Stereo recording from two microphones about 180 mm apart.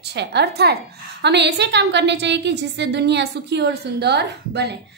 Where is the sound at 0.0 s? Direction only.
70° right (ahead or behind).